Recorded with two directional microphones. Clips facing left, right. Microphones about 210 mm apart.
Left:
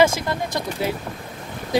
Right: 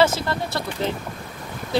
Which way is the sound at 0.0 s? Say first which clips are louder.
Left 1 dB; 15° left (ahead or behind).